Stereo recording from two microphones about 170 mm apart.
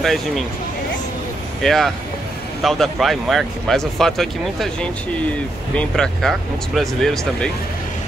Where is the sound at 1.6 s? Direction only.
Centre (ahead or behind).